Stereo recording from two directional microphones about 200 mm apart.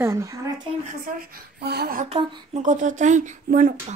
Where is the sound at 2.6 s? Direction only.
40° right (ahead or behind).